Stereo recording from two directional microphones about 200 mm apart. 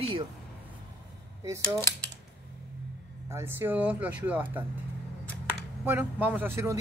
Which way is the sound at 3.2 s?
15° right (ahead or behind).